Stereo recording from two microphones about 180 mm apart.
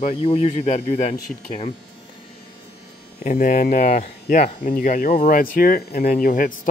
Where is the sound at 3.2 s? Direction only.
45° left (ahead or behind).